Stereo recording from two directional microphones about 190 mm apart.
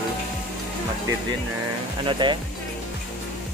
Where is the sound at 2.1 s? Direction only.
25° right (ahead or behind).